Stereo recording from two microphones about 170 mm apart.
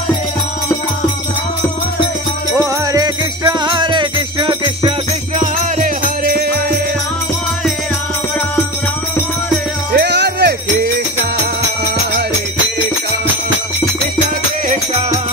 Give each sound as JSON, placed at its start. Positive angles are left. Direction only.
{"t": 2.6, "sound": "music", "side_deg": -20}
{"t": 5.4, "sound": "music", "side_deg": -50}
{"t": 9.9, "sound": "music", "side_deg": -90}